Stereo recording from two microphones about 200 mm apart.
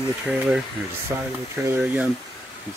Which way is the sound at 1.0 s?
15° right (ahead or behind).